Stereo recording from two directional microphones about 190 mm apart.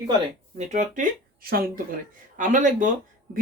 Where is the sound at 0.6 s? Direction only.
40° right (ahead or behind).